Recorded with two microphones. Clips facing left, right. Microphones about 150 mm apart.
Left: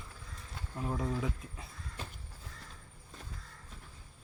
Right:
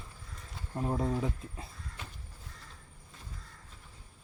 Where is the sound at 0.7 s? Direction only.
30° right (ahead or behind).